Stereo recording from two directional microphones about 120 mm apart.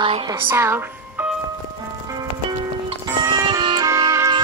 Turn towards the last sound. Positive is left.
turn(degrees=-25)  # may be behind; listen again after turning